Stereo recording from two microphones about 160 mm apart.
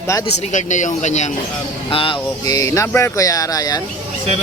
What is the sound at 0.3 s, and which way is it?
Speech, 45° left (ahead or behind).